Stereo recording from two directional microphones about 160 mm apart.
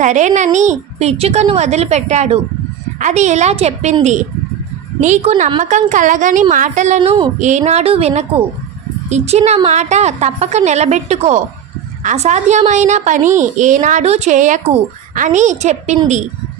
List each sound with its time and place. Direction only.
0.0 s a woman's voice: 50° right (ahead or behind)
7.0 s a woman's voice: 30° right (ahead or behind)
7.3 s a woman's voice: 50° right (ahead or behind)